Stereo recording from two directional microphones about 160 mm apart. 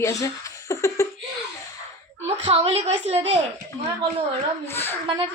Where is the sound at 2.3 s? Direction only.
35° right (ahead or behind).